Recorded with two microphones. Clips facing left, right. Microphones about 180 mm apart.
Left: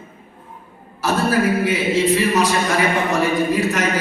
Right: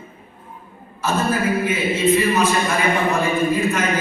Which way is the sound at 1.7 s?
80° left.